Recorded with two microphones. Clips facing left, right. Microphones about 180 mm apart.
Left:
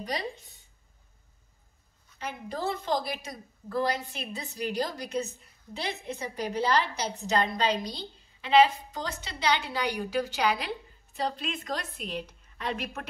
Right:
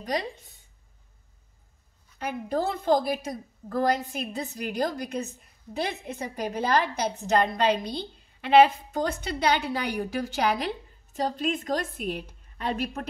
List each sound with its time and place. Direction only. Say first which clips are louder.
2.1 s a woman's voice: right 7 dB; 50° right (ahead or behind)